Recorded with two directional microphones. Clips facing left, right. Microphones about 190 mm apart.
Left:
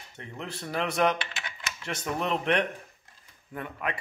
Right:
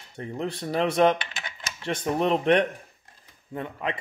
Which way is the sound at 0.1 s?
35° right (ahead or behind).